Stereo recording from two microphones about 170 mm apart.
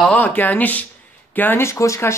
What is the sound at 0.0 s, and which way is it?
Speech, 10° left (ahead or behind).